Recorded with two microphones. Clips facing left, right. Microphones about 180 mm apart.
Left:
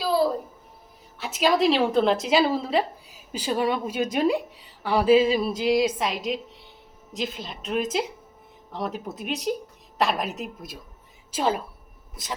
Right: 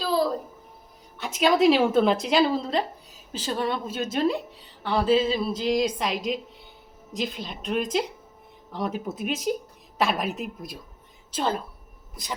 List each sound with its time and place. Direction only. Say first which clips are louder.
1.2 s a woman's voice: right 1 dB; centre (ahead or behind)